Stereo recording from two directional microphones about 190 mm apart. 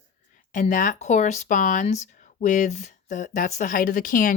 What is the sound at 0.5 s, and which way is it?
Speech, 45° left (ahead or behind).